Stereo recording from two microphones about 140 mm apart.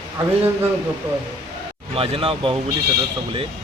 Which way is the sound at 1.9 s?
40° right (ahead or behind).